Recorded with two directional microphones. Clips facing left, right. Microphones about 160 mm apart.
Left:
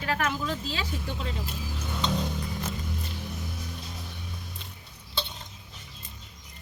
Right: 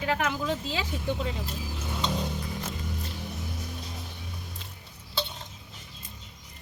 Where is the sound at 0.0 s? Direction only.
20° right (ahead or behind).